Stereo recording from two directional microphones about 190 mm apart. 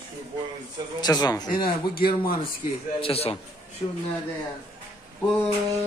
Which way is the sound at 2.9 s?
30° left (ahead or behind).